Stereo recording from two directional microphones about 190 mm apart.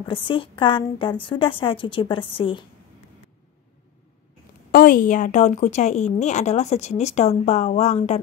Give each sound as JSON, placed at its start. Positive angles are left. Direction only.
{"t": 0.0, "sound": "a woman's voice", "side_deg": 25}
{"t": 4.6, "sound": "a woman's voice", "side_deg": 50}